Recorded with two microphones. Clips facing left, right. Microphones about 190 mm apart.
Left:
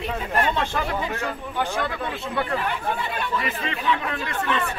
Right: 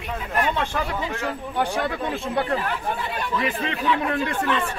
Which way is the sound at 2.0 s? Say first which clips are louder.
Right 3 dB; 40° right (ahead or behind).